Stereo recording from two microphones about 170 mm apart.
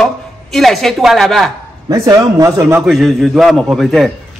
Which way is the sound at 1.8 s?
20° right (ahead or behind).